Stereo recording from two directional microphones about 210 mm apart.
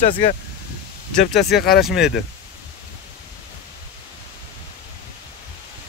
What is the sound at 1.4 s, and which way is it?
Speech, 50° left (ahead or behind).